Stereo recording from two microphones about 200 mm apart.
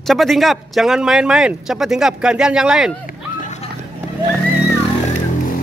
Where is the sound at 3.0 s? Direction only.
35° left (ahead or behind).